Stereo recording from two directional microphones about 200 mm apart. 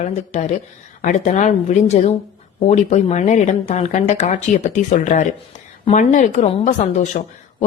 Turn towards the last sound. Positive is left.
turn(degrees=35)  # may be behind; listen again after turning